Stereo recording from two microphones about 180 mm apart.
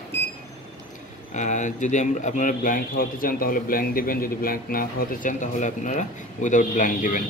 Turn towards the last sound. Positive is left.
turn(degrees=50)  # may be behind; listen again after turning